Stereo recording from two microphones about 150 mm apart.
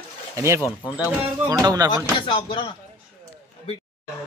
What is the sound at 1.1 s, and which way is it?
Speech, 10° right (ahead or behind).